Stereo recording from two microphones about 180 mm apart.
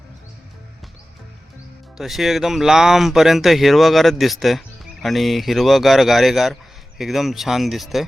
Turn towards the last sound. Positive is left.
turn(degrees=0)  # may be behind; listen again after turning